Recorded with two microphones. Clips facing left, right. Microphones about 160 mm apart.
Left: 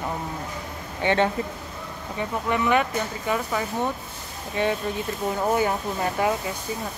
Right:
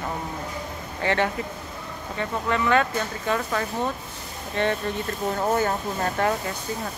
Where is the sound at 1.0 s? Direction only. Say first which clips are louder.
Left 2 dB; 25° left (ahead or behind).